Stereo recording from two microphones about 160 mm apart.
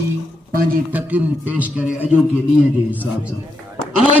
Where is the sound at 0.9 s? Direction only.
10° right (ahead or behind).